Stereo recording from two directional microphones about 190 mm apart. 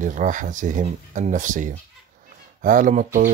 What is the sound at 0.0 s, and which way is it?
Speech, 45° right (ahead or behind).